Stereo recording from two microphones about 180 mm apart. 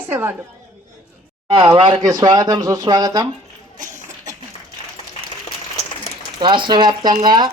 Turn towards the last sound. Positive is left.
turn(degrees=-25)  # may be behind; listen again after turning